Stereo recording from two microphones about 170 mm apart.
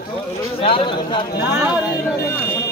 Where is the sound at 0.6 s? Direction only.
30° left (ahead or behind).